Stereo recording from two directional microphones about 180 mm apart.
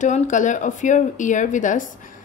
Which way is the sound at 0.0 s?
45° left (ahead or behind).